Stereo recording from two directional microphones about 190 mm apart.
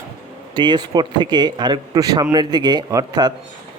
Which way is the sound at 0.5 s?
25° right (ahead or behind).